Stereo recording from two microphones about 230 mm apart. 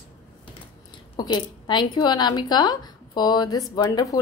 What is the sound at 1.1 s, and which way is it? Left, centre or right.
Speech, centre.